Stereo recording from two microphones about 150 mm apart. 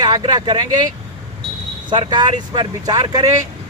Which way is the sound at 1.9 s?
30° right (ahead or behind).